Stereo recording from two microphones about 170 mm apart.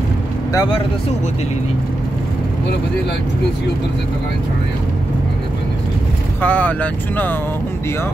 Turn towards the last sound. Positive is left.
turn(degrees=10)  # may be behind; listen again after turning